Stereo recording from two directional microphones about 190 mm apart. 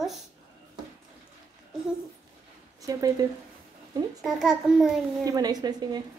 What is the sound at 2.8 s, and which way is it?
Speech, 20° right (ahead or behind).